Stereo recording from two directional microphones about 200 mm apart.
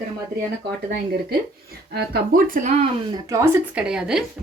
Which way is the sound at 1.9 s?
50° right (ahead or behind).